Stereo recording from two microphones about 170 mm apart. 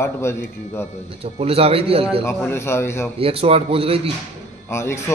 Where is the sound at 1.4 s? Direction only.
35° right (ahead or behind).